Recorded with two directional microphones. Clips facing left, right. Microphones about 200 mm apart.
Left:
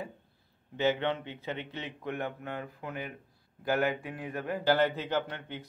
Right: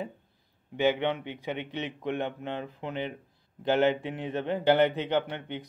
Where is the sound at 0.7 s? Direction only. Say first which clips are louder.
Right 3 dB; 15° right (ahead or behind).